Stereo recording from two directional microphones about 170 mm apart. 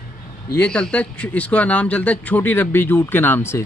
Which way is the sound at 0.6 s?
5° left (ahead or behind).